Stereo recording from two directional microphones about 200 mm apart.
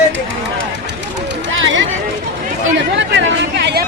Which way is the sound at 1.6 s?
70° right (ahead or behind).